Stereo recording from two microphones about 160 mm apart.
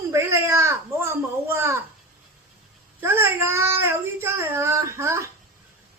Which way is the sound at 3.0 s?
15° right (ahead or behind).